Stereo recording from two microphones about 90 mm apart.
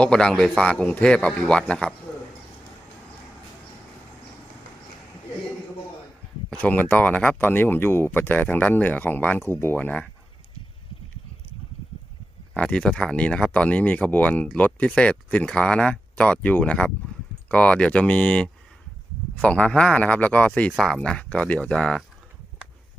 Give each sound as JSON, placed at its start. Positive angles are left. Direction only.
{"t": 0.0, "sound": "speech", "side_deg": 10}
{"t": 6.6, "sound": "speech", "side_deg": 15}
{"t": 12.5, "sound": "speech", "side_deg": 10}